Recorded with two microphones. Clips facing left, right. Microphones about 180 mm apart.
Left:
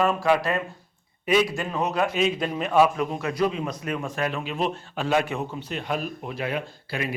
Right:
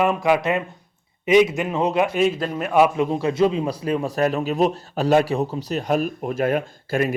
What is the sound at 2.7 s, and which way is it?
Speech, 15° right (ahead or behind).